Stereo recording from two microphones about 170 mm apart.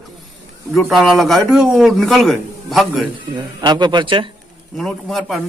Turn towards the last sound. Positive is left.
turn(degrees=0)  # may be behind; listen again after turning